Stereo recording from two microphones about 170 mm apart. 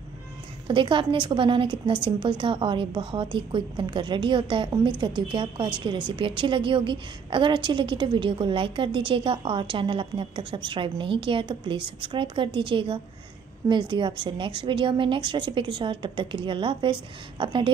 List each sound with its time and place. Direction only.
0.7 s a woman's voice: 30° right (ahead or behind)